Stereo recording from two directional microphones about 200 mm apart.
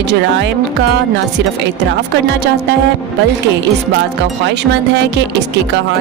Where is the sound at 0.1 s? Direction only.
60° right (ahead or behind).